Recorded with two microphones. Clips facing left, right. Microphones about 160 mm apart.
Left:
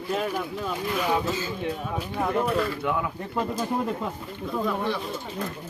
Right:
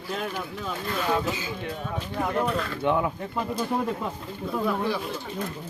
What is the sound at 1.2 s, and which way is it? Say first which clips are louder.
Speech: left 2 dB; 15° right (ahead or behind).